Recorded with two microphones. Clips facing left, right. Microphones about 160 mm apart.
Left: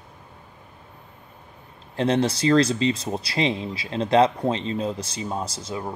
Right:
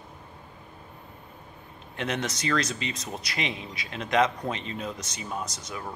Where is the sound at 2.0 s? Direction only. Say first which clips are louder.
Left 9 dB; 30° left (ahead or behind).